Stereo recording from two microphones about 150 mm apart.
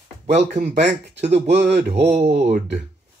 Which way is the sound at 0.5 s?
50° right (ahead or behind).